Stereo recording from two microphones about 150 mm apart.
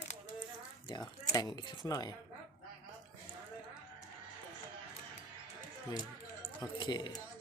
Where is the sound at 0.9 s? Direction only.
30° left (ahead or behind).